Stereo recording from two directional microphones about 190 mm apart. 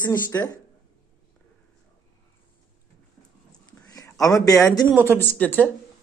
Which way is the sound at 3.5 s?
20° left (ahead or behind).